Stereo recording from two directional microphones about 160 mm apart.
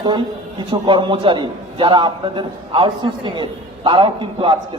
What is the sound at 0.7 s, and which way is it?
A man's voice, 30° right (ahead or behind).